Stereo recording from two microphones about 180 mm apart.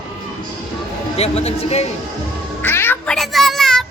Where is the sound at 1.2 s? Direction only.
35° left (ahead or behind).